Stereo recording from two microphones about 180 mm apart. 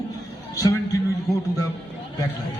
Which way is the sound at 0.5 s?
20° left (ahead or behind).